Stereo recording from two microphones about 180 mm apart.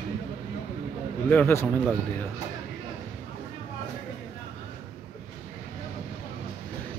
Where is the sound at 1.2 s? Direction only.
10° left (ahead or behind).